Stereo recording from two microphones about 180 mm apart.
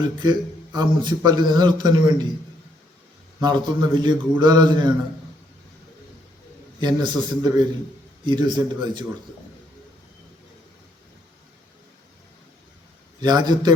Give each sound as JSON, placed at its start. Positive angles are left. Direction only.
{"t": 0.0, "sound": "a man's voice", "side_deg": -25}
{"t": 3.4, "sound": "a man's voice", "side_deg": -25}
{"t": 6.7, "sound": "a man's voice", "side_deg": -25}
{"t": 13.2, "sound": "a man's voice", "side_deg": -25}